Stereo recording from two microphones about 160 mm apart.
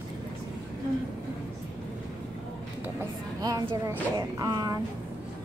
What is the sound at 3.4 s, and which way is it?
Speech, 20° right (ahead or behind).